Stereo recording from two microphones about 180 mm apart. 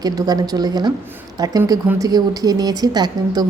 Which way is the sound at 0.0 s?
20° right (ahead or behind).